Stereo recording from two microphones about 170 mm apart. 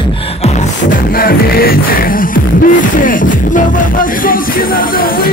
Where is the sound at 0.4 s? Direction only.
55° left (ahead or behind).